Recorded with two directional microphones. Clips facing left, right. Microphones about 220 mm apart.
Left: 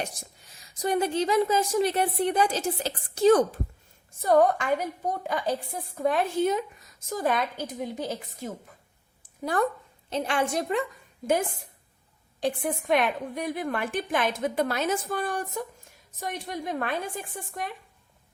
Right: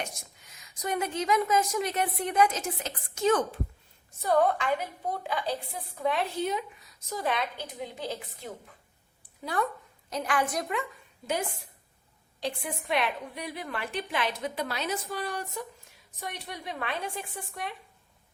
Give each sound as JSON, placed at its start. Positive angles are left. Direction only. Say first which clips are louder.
{"t": 0.0, "sound": "a woman's voice", "louder": "left 3 dB", "side_deg": 35}
{"t": 10.1, "sound": "a woman's voice", "louder": "left 3 dB", "side_deg": 25}
{"t": 12.4, "sound": "a woman's voice", "louder": "left 6 dB", "side_deg": 50}